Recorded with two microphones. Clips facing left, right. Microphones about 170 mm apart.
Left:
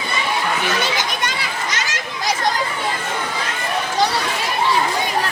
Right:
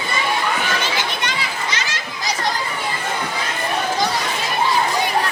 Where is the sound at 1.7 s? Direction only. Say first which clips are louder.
Left 1 dB; 45° left (ahead or behind).